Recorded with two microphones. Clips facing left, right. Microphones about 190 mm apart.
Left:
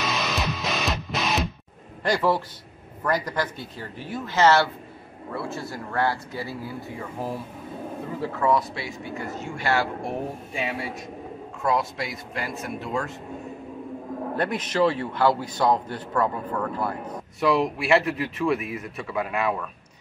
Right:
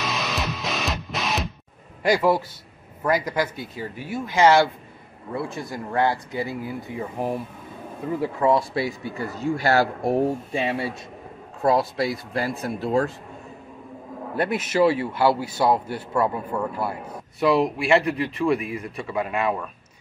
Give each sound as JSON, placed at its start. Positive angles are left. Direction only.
{"t": 0.0, "sound": "music", "side_deg": 0}
{"t": 2.0, "sound": "a man's voice", "side_deg": -10}
{"t": 8.7, "sound": "speech", "side_deg": -40}
{"t": 14.3, "sound": "a man's voice", "side_deg": -10}